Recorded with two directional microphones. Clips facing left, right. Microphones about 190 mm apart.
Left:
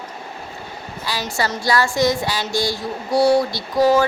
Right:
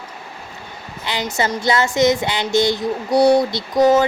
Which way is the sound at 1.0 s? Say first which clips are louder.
Right 2 dB; 20° right (ahead or behind).